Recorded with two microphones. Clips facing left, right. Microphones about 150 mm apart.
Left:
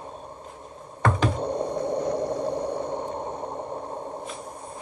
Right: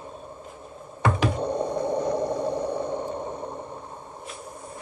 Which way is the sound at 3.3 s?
35° left (ahead or behind).